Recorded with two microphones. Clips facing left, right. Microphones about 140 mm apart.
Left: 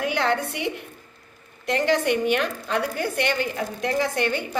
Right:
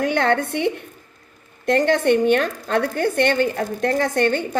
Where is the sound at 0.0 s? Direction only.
50° right (ahead or behind).